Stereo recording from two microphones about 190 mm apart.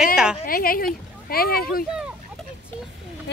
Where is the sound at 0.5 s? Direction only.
50° left (ahead or behind).